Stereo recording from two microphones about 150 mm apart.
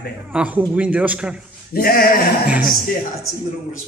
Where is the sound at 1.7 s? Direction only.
85° left.